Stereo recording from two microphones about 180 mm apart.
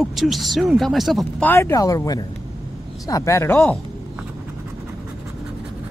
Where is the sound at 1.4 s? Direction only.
15° left (ahead or behind).